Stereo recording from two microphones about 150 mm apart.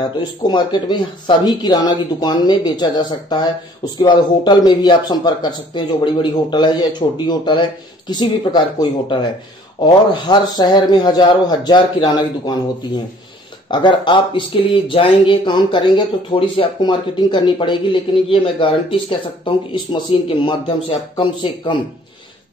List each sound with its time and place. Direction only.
0.0 s a man's voice: 30° left (ahead or behind)
13.7 s speech: 30° left (ahead or behind)